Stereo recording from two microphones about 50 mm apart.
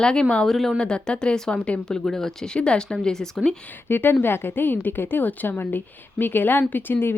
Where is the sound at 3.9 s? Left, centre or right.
Left.